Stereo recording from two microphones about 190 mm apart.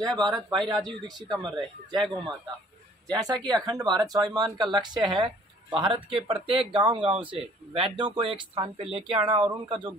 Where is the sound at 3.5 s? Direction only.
20° right (ahead or behind).